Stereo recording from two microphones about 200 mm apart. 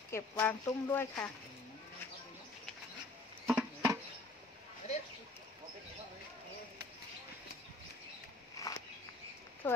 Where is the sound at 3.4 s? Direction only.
10° right (ahead or behind).